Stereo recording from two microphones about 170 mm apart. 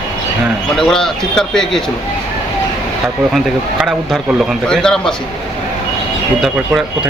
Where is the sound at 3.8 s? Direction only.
Centre (ahead or behind).